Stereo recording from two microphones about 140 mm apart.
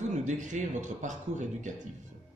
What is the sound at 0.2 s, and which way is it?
A man's voice, 60° right (ahead or behind).